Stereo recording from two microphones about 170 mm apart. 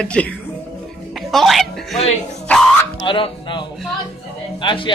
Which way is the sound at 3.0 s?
30° left (ahead or behind).